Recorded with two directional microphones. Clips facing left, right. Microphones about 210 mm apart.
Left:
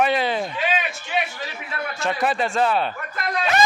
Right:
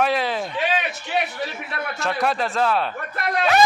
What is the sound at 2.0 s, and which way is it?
Speech, centre (ahead or behind).